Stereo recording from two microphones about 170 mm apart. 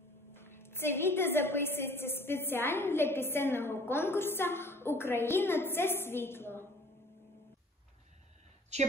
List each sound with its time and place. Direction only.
0.3 s a woman's voice: 15° left (ahead or behind)
8.7 s a woman's voice: 40° right (ahead or behind)